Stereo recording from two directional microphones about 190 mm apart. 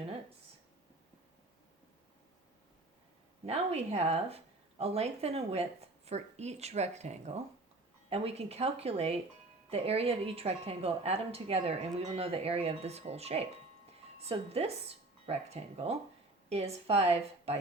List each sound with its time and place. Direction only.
3.4 s a woman's voice: 35° right (ahead or behind)